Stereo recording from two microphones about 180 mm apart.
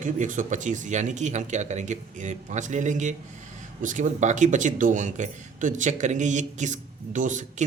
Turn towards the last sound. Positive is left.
turn(degrees=-45)  # may be behind; listen again after turning